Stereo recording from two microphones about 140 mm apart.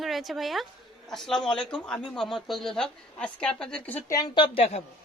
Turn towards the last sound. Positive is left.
turn(degrees=40)  # may be behind; listen again after turning